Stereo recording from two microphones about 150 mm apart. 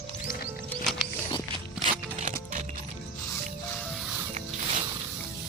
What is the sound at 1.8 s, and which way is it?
Music, 55° right (ahead or behind).